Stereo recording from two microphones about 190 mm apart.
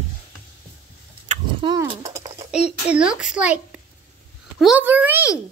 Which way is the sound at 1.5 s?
25° right (ahead or behind).